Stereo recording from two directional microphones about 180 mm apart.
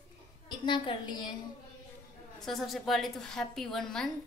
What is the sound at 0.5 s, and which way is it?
Speech, 25° left (ahead or behind).